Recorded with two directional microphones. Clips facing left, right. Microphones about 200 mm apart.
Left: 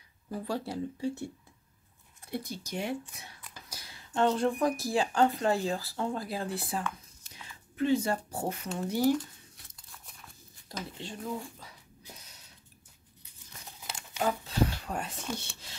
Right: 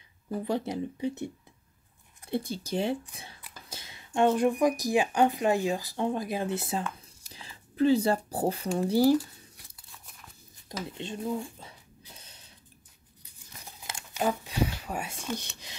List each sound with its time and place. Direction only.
0.3 s speech: 20° right (ahead or behind)
2.3 s speech: 30° right (ahead or behind)
9.8 s scissors: centre (ahead or behind)
11.0 s speech: 20° right (ahead or behind)
12.2 s a sound: 30° right (ahead or behind)
14.1 s a sound: 15° right (ahead or behind)